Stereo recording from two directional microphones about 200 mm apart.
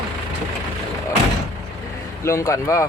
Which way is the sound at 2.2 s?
15° left (ahead or behind).